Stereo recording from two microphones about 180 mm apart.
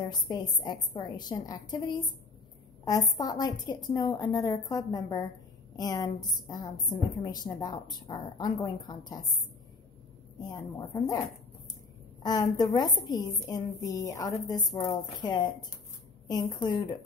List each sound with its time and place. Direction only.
0.3 s a woman's voice: 25° left (ahead or behind)
10.5 s a woman's voice: 20° left (ahead or behind)